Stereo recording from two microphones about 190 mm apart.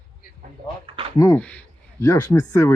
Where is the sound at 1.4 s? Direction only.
10° left (ahead or behind).